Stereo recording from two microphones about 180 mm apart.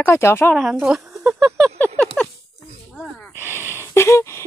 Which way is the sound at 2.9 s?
Centre (ahead or behind).